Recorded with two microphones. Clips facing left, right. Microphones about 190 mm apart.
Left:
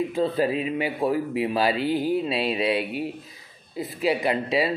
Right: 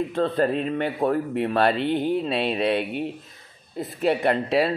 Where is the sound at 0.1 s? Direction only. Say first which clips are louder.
Right 1 dB; 5° left (ahead or behind).